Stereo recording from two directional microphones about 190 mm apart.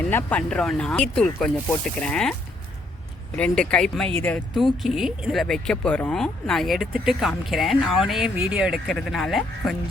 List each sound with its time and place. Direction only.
0.1 s speech: 10° left (ahead or behind)
3.3 s speech: 5° left (ahead or behind)